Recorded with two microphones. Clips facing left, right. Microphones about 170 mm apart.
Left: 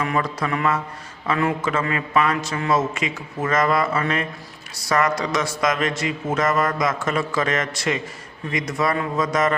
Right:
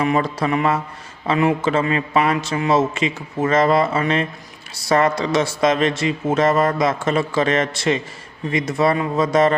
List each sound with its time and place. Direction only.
0.0 s speech: 25° right (ahead or behind)